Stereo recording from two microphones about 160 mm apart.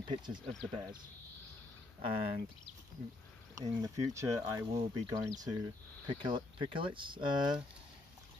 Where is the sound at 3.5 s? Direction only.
20° right (ahead or behind).